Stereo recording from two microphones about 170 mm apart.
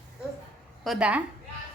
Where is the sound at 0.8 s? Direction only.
5° right (ahead or behind).